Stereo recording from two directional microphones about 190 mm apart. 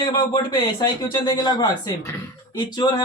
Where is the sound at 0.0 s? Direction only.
25° left (ahead or behind).